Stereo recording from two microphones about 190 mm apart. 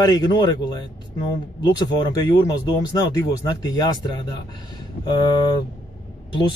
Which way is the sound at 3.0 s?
20° left (ahead or behind).